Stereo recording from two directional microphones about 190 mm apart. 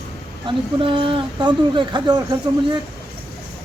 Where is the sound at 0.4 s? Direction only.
25° right (ahead or behind).